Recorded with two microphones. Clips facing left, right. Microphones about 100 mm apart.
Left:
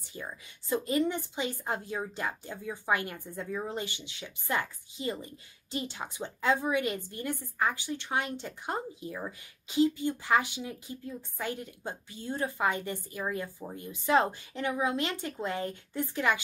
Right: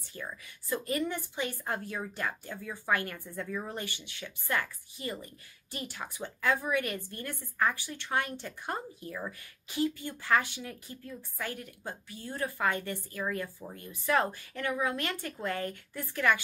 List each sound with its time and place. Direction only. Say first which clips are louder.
0.1 s a woman's voice: even; 20° left (ahead or behind)